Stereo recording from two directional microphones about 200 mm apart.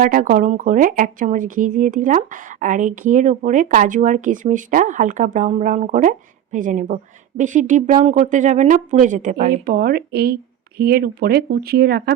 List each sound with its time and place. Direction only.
0.0 s speech: 45° right (ahead or behind)